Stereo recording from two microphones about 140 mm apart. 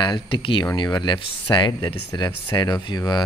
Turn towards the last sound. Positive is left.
turn(degrees=30)  # may be behind; listen again after turning